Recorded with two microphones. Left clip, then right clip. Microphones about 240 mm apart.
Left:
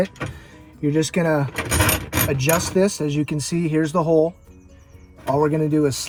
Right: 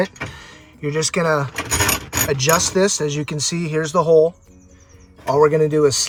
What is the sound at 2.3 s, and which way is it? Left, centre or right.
Speech, right.